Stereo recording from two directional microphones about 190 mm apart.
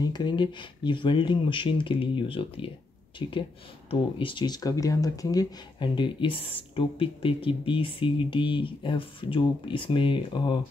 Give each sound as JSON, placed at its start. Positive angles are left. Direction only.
{"t": 0.0, "sound": "speech", "side_deg": 20}